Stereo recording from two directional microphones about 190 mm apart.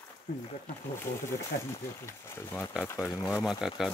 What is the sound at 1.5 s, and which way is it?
Speech, 55° left (ahead or behind).